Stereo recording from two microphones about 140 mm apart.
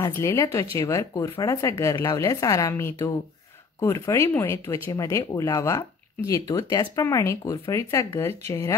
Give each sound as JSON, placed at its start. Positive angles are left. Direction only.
{"t": 0.0, "sound": "speech", "side_deg": 20}